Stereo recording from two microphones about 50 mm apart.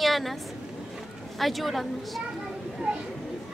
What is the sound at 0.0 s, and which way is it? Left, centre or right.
Vehicle, centre.